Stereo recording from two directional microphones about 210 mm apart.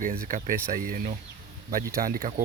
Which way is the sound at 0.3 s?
40° right (ahead or behind).